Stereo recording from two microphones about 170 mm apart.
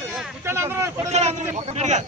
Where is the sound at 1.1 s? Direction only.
40° right (ahead or behind).